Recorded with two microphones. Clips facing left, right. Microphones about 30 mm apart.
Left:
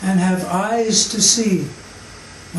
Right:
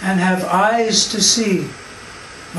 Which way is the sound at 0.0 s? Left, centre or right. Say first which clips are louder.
Right 1 dB; right.